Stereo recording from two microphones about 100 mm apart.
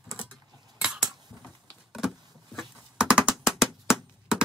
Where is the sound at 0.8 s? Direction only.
5° right (ahead or behind).